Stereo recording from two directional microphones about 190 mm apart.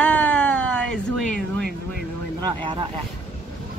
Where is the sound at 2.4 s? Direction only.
25° right (ahead or behind).